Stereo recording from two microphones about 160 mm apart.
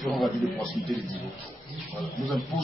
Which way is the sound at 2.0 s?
Centre (ahead or behind).